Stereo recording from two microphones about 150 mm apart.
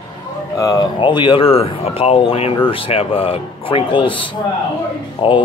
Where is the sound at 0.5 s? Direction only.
25° left (ahead or behind).